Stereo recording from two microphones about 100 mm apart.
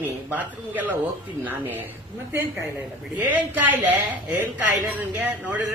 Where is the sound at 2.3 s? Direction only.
30° right (ahead or behind).